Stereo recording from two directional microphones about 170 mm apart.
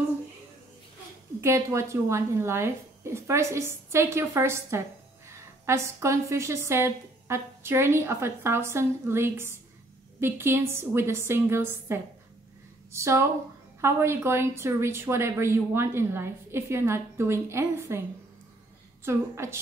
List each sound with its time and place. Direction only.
1.4 s a woman's voice: 15° right (ahead or behind)
19.0 s a woman's voice: 15° right (ahead or behind)